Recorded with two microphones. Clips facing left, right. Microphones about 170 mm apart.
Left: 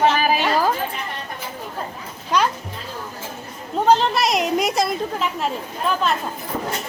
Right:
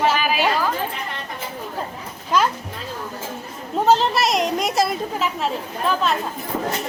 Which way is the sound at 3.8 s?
Centre (ahead or behind).